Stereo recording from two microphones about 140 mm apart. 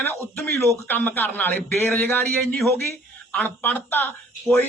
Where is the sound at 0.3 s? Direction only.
20° left (ahead or behind).